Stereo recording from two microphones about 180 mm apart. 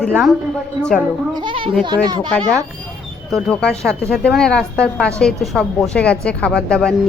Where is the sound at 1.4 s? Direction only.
30° right (ahead or behind).